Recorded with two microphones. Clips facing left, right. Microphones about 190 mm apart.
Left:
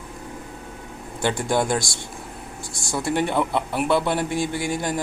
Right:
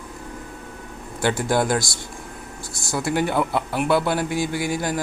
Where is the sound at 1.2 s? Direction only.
5° right (ahead or behind).